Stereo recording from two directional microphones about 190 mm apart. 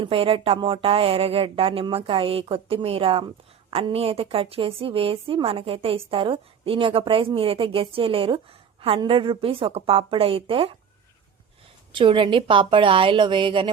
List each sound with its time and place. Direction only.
0.0 s a woman's voice: 30° right (ahead or behind)
11.9 s a woman's voice: 25° right (ahead or behind)